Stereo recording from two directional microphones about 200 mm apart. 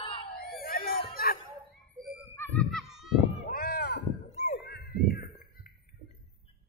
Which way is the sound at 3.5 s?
45° left (ahead or behind).